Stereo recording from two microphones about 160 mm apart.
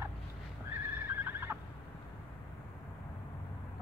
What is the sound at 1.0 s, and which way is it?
Neigh, 15° right (ahead or behind).